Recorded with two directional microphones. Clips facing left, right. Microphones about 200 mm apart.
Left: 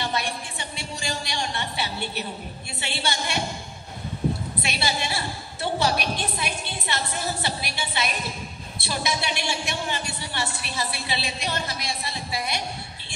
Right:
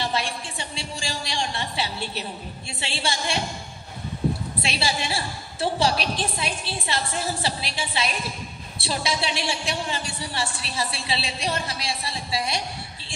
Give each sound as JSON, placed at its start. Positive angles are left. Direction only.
{"t": 0.0, "sound": "a sound", "side_deg": -30}
{"t": 2.8, "sound": "a woman's voice", "side_deg": -30}
{"t": 4.6, "sound": "a woman's voice", "side_deg": -30}